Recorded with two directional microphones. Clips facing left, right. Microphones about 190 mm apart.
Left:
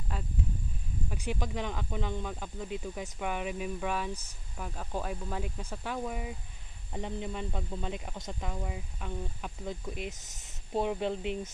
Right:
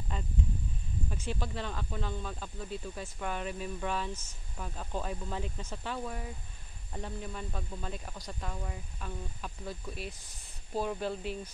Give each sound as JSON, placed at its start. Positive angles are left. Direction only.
{"t": 0.1, "sound": "speech", "side_deg": 5}